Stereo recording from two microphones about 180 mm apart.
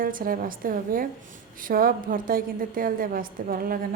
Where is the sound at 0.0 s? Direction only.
50° right (ahead or behind).